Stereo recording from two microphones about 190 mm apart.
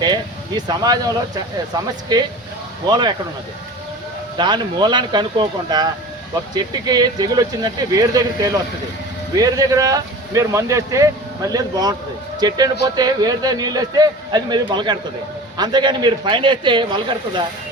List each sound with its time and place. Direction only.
0.0 s speech: 20° right (ahead or behind)
4.4 s a man's voice: 25° right (ahead or behind)